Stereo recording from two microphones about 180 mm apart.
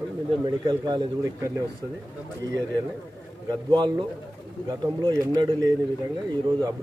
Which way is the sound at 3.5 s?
25° right (ahead or behind).